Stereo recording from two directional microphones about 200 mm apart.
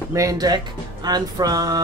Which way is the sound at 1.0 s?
20° right (ahead or behind).